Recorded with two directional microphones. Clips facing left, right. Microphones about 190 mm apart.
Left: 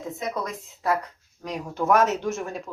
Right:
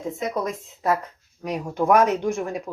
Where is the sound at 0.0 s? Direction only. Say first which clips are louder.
Right 4 dB; 20° right (ahead or behind).